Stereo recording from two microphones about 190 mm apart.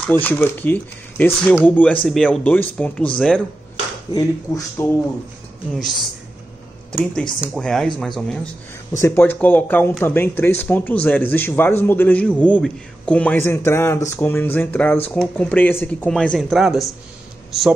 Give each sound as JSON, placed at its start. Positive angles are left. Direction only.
{"t": 0.0, "sound": "speech", "side_deg": 10}
{"t": 4.1, "sound": "speech", "side_deg": 20}
{"t": 6.9, "sound": "speech", "side_deg": 5}